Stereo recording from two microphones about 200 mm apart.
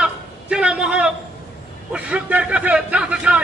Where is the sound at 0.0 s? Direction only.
5° right (ahead or behind).